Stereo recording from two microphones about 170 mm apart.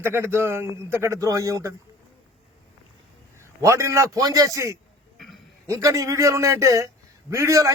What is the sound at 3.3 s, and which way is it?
A man's voice, 15° right (ahead or behind).